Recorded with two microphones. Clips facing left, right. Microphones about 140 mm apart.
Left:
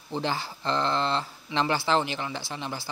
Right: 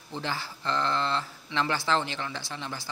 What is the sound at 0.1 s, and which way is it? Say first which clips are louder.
Speech: left 4 dB; 20° left (ahead or behind).